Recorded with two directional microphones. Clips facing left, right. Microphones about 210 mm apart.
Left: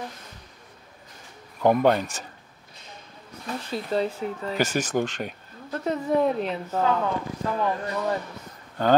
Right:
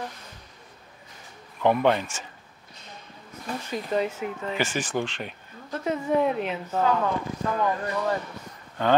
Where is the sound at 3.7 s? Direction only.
15° right (ahead or behind).